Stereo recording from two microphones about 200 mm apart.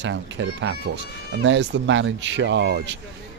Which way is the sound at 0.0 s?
70° right (ahead or behind).